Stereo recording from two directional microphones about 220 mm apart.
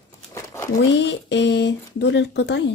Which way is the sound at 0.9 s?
55° left (ahead or behind).